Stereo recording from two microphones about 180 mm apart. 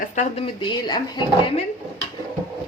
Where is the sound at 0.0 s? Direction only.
40° left (ahead or behind).